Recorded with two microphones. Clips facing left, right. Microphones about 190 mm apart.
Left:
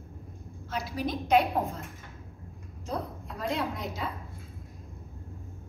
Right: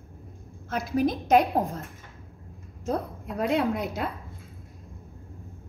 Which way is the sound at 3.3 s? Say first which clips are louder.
Right 7 dB; 60° right (ahead or behind).